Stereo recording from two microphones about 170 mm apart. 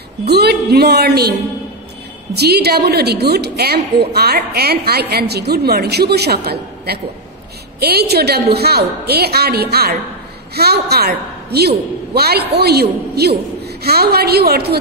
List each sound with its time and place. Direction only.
0.3 s a woman's voice: 70° right (ahead or behind)
2.3 s a woman's voice: 70° right (ahead or behind)